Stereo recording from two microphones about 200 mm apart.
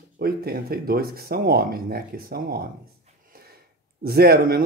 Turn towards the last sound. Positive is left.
turn(degrees=-50)  # may be behind; listen again after turning